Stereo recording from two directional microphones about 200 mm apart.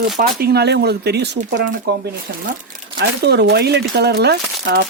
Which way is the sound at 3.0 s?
55° right (ahead or behind).